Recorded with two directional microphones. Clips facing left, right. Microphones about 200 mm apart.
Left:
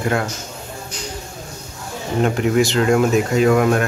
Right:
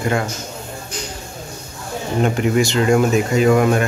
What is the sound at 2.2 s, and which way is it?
Speech, centre (ahead or behind).